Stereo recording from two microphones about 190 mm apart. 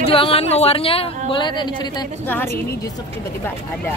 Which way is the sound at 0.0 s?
30° left (ahead or behind).